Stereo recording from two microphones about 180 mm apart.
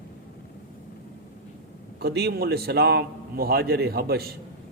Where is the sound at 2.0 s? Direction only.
65° right (ahead or behind).